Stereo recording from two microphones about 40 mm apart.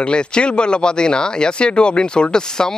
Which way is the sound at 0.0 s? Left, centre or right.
Left.